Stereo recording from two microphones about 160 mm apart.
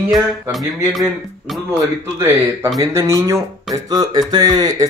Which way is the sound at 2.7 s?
20° right (ahead or behind).